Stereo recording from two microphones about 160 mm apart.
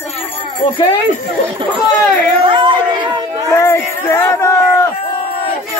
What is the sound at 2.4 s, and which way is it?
Chatter, 30° right (ahead or behind).